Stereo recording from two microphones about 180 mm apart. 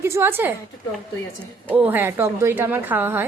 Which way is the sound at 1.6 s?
10° right (ahead or behind).